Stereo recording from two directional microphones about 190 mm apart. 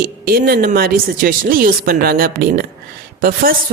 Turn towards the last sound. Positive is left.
turn(degrees=-45)  # may be behind; listen again after turning